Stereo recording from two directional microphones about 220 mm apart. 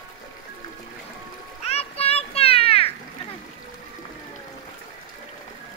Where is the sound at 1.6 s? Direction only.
30° left (ahead or behind).